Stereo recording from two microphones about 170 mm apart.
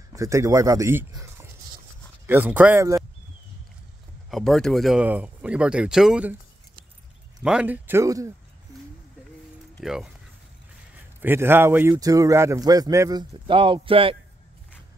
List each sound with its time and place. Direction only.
0.1 s speech: 20° right (ahead or behind)
4.3 s speech: centre (ahead or behind)
7.4 s speech: 5° right (ahead or behind)
9.8 s speech: 5° right (ahead or behind)
11.1 s a man's voice: 10° right (ahead or behind); by 14.1 s 30° right (ahead or behind)